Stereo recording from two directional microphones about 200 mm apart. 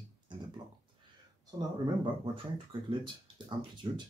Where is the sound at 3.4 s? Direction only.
25° right (ahead or behind).